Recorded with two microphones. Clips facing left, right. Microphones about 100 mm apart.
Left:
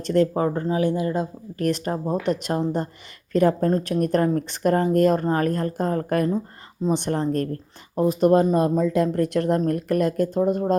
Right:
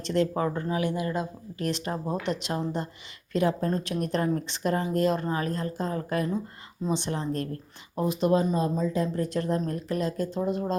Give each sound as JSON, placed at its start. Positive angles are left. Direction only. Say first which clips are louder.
{"t": 0.0, "sound": "speech", "louder": "left 5 dB", "side_deg": 45}
{"t": 1.5, "sound": "speech", "louder": "left 6 dB", "side_deg": 50}